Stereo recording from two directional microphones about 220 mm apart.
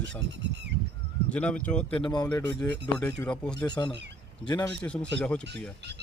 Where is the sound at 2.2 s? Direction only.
5° left (ahead or behind).